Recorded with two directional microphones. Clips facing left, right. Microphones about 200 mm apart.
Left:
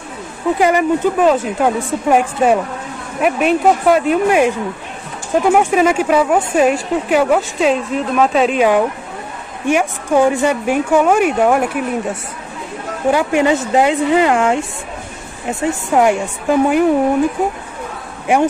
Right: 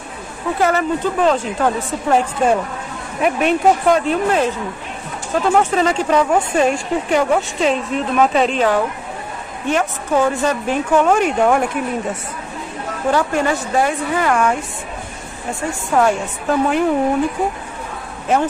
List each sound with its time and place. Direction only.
0.6 s a woman's voice: 15° left (ahead or behind)
15.9 s a woman's voice: 15° left (ahead or behind)
18.3 s a woman's voice: 15° left (ahead or behind)